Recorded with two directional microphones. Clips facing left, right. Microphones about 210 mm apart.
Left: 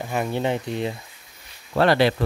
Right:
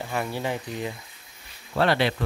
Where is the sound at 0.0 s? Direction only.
20° left (ahead or behind).